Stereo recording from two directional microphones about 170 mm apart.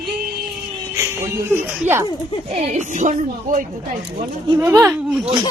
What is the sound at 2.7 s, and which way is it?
Speech, 45° right (ahead or behind).